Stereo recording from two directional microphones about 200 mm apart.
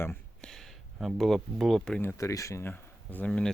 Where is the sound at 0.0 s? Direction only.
5° left (ahead or behind).